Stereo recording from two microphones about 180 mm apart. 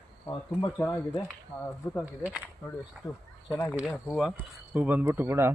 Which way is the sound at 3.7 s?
5° right (ahead or behind).